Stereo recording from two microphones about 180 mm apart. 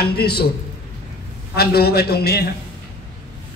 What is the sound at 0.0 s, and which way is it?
Speech, 60° left (ahead or behind).